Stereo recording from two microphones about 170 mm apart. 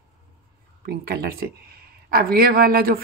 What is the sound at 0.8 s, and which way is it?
Speech, 65° right (ahead or behind).